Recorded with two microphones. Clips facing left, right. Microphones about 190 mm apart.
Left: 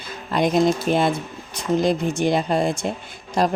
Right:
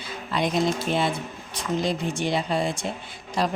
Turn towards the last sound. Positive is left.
turn(degrees=45)  # may be behind; listen again after turning